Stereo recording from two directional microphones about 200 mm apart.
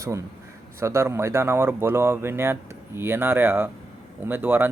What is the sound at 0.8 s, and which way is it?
Speech, 15° right (ahead or behind).